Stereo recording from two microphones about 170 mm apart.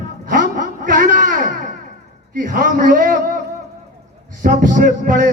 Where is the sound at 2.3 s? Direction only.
55° right (ahead or behind).